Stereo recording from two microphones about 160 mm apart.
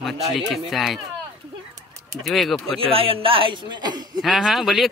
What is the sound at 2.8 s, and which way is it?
A man's voice, 35° right (ahead or behind).